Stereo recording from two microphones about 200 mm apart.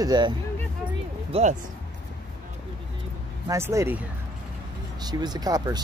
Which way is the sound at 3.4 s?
15° right (ahead or behind).